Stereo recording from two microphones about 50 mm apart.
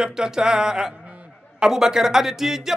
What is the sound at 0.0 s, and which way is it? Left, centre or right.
Speech, centre.